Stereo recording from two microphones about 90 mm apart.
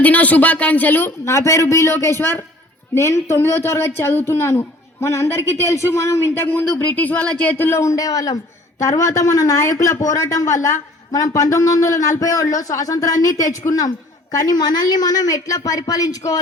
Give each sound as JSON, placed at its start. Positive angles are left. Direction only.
{"t": 0.0, "sound": "speech", "side_deg": 15}
{"t": 7.5, "sound": "a man's voice", "side_deg": 25}